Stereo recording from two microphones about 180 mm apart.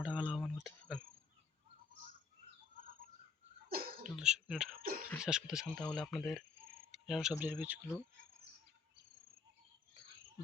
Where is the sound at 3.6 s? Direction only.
55° right (ahead or behind).